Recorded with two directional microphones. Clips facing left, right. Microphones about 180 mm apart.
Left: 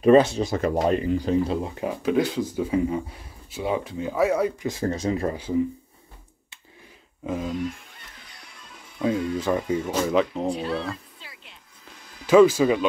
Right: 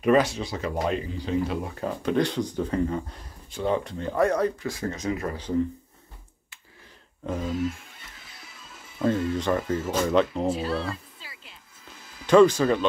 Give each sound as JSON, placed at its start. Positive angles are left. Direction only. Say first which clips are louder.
{"t": 0.0, "sound": "speech", "louder": "left 5 dB", "side_deg": 30}
{"t": 0.4, "sound": "speech", "louder": "left 6 dB", "side_deg": 45}
{"t": 1.8, "sound": "speech", "louder": "left 1 dB", "side_deg": 10}
{"t": 4.8, "sound": "speech", "louder": "left 5 dB", "side_deg": 30}
{"t": 7.2, "sound": "music", "louder": "even", "side_deg": 0}
{"t": 9.8, "sound": "speech", "louder": "right 2 dB", "side_deg": 5}